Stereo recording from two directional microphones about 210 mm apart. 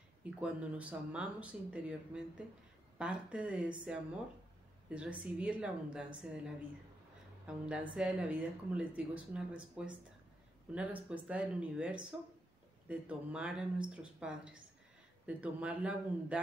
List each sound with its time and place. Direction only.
0.2 s speech: 5° right (ahead or behind)
4.8 s speech: 5° right (ahead or behind)